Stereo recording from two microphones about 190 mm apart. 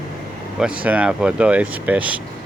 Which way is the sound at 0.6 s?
5° right (ahead or behind).